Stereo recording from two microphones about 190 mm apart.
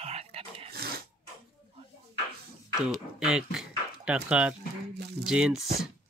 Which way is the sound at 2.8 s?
5° right (ahead or behind).